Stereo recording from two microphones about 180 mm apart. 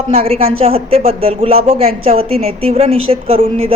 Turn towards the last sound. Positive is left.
turn(degrees=-30)  # may be behind; listen again after turning